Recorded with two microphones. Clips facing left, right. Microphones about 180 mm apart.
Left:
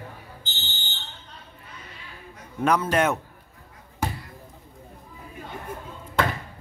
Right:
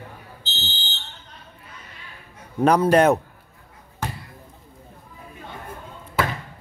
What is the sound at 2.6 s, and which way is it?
Speech, 35° right (ahead or behind).